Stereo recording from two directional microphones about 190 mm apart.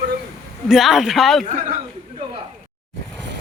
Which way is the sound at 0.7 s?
Centre (ahead or behind).